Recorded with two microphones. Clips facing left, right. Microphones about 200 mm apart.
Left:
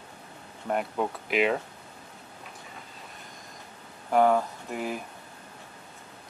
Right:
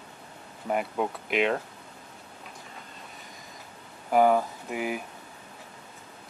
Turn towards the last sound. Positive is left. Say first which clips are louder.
# right 1 dB
turn(degrees=-5)  # may be behind; listen again after turning